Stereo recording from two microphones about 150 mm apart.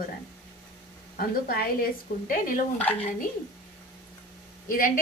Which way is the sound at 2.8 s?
10° left (ahead or behind).